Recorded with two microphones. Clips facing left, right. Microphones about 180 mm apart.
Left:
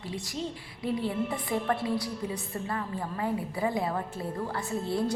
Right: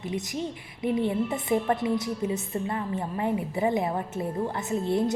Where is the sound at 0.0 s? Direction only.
20° right (ahead or behind).